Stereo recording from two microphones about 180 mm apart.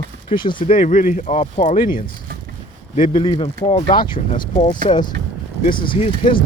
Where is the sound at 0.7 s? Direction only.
50° left (ahead or behind).